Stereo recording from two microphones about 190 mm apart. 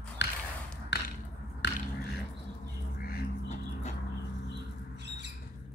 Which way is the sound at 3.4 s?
40° left (ahead or behind).